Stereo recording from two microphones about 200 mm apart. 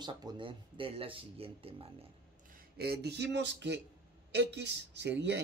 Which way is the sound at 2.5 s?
50° right (ahead or behind).